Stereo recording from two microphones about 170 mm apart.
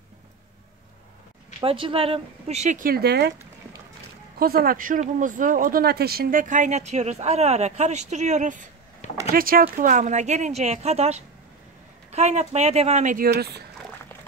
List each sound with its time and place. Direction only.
1.6 s speech: 30° right (ahead or behind); by 3.3 s 80° right
4.4 s speech: 60° right (ahead or behind)
9.3 s speech: 60° right (ahead or behind)
13.3 s speech: 75° right (ahead or behind)